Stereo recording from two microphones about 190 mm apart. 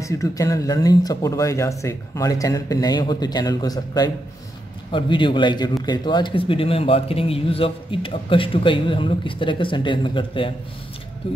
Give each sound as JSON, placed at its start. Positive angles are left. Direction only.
{"t": 0.0, "sound": "speech", "side_deg": 15}